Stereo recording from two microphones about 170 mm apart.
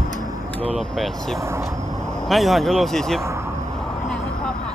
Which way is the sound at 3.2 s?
15° right (ahead or behind).